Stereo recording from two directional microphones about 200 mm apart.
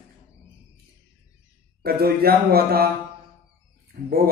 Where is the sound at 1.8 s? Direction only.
50° right (ahead or behind).